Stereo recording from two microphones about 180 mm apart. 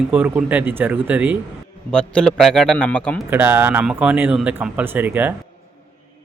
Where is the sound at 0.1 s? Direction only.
10° right (ahead or behind).